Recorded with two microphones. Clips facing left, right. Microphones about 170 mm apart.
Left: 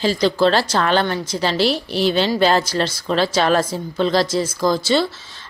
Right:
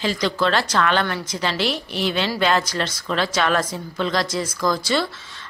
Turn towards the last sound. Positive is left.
turn(degrees=25)  # may be behind; listen again after turning